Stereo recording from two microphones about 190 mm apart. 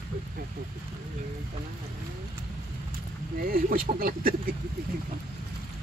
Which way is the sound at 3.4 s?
50° right (ahead or behind).